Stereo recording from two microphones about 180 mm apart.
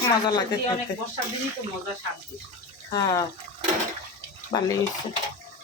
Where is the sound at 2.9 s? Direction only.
20° left (ahead or behind).